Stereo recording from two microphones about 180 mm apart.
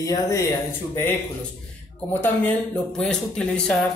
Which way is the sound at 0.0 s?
20° left (ahead or behind).